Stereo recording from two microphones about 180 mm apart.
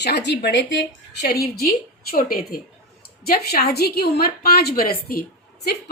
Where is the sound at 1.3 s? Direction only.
55° left (ahead or behind).